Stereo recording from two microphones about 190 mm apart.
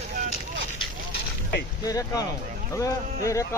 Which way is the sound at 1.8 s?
20° left (ahead or behind).